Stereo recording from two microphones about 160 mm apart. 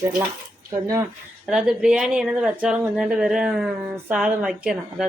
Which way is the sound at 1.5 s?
5° right (ahead or behind).